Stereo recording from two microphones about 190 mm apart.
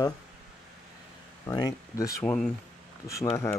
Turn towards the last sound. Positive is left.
turn(degrees=15)  # may be behind; listen again after turning